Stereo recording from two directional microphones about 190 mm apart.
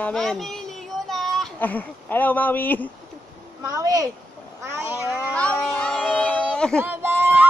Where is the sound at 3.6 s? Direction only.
20° right (ahead or behind).